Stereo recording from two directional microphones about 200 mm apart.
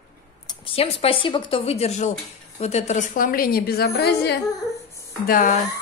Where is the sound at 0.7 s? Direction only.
30° left (ahead or behind); by 4.4 s 55° left (ahead or behind).